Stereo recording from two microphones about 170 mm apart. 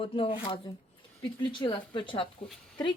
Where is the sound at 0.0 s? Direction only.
35° left (ahead or behind).